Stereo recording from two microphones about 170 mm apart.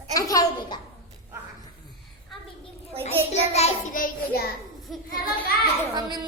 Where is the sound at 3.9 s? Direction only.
60° left (ahead or behind).